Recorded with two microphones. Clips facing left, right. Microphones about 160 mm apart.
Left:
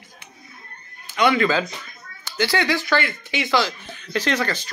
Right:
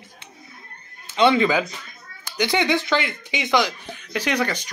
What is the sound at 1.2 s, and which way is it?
Speech, 25° right (ahead or behind).